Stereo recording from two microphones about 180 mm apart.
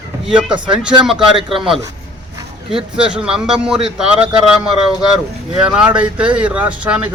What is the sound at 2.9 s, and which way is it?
A man's voice, 5° right (ahead or behind).